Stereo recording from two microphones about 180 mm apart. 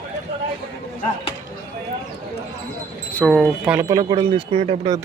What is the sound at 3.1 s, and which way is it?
Speech, centre (ahead or behind).